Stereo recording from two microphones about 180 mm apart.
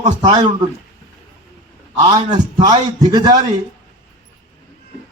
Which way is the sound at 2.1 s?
25° right (ahead or behind).